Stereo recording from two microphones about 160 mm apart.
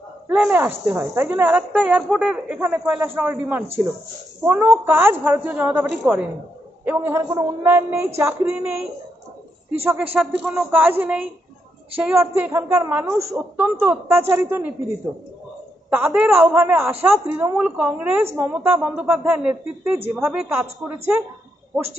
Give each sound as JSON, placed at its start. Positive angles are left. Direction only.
{"t": 0.3, "sound": "a woman's voice", "side_deg": -10}
{"t": 10.1, "sound": "a woman's voice", "side_deg": -5}
{"t": 15.9, "sound": "a woman's voice", "side_deg": -10}